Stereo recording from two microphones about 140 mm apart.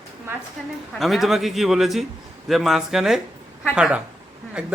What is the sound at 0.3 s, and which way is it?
Speech, 15° right (ahead or behind).